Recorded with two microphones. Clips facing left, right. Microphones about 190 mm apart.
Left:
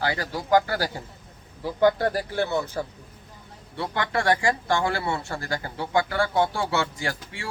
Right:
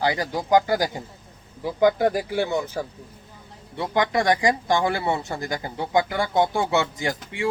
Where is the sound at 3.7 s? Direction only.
15° right (ahead or behind).